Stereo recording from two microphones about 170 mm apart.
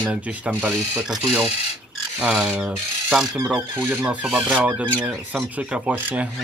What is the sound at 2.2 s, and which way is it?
Speech, 5° right (ahead or behind).